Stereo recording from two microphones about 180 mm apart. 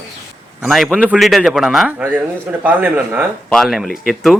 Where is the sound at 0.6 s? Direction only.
Centre (ahead or behind).